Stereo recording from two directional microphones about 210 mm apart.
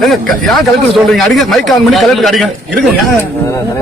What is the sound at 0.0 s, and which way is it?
A man's voice, centre (ahead or behind).